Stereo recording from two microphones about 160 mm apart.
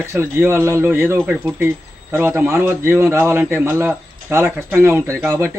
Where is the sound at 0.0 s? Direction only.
15° right (ahead or behind).